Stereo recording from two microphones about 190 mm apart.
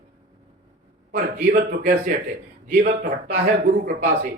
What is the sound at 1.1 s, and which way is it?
A man's voice, 45° right (ahead or behind).